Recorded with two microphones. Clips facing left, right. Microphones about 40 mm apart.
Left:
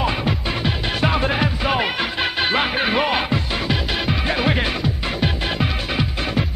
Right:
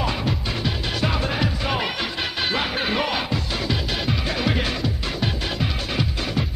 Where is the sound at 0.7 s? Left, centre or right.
Left.